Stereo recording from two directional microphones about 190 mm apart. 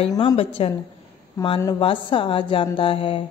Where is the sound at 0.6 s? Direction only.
30° left (ahead or behind).